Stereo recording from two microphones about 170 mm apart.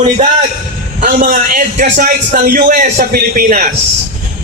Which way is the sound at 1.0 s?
55° right (ahead or behind).